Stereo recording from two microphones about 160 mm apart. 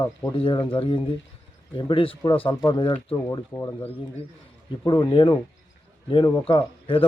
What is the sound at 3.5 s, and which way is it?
Speech, 15° left (ahead or behind).